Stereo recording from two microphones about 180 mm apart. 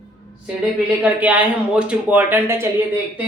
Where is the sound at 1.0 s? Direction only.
10° right (ahead or behind).